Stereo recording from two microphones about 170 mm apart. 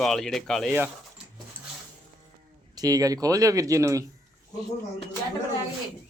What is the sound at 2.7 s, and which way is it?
Speech, 20° right (ahead or behind).